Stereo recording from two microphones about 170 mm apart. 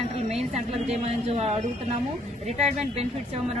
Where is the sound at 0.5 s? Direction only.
40° right (ahead or behind).